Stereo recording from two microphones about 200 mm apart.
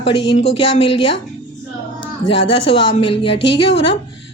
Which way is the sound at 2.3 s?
30° left (ahead or behind).